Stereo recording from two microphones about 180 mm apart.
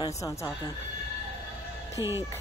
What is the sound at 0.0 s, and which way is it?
Speech, 15° left (ahead or behind).